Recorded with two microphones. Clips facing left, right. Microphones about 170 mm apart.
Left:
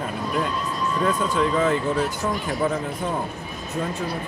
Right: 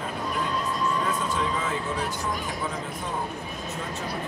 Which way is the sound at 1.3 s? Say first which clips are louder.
Left 7 dB; 60° left (ahead or behind).